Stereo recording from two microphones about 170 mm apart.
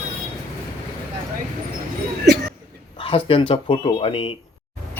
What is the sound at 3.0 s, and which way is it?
Speech, 30° left (ahead or behind).